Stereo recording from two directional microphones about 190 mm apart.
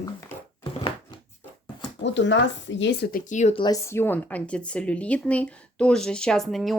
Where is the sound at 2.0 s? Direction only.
70° left (ahead or behind).